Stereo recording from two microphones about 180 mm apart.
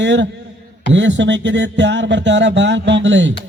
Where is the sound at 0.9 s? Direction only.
90° right.